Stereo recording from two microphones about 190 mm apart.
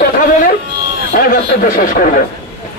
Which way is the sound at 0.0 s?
45° left (ahead or behind).